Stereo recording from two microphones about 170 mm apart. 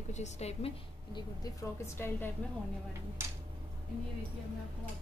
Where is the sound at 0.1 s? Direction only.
40° left (ahead or behind).